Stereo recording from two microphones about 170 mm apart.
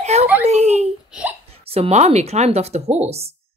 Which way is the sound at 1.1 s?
5° right (ahead or behind).